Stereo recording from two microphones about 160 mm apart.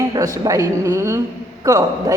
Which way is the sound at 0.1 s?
20° right (ahead or behind).